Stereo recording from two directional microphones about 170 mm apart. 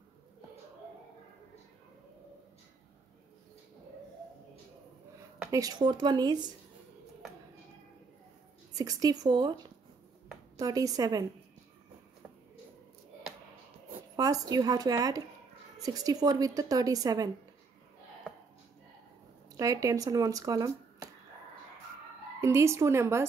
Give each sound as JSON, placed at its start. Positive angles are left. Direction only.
{"t": 5.5, "sound": "a woman's voice", "side_deg": -20}
{"t": 8.7, "sound": "a woman's voice", "side_deg": -20}
{"t": 10.6, "sound": "a woman's voice", "side_deg": -20}
{"t": 14.1, "sound": "a woman's voice", "side_deg": -20}
{"t": 19.5, "sound": "speech", "side_deg": -20}
{"t": 22.4, "sound": "a woman's voice", "side_deg": -15}